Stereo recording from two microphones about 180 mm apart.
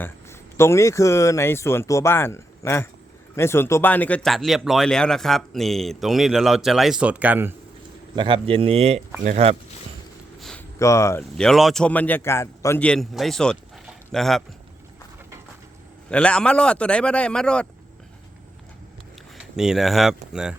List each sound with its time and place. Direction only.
0.0 s speech: 15° left (ahead or behind); by 7.5 s 10° right (ahead or behind)
8.1 s speech: 25° right (ahead or behind)
10.8 s speech: 15° left (ahead or behind)
16.0 s speech: 5° left (ahead or behind)
19.5 s speech: 5° right (ahead or behind)